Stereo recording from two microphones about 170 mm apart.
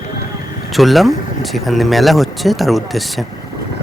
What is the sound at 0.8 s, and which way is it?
Speech, centre (ahead or behind).